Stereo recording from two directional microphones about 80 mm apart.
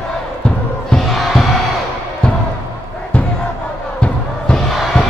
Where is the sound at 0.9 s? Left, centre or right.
Centre.